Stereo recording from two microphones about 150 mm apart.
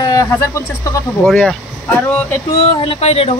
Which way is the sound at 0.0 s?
25° left (ahead or behind).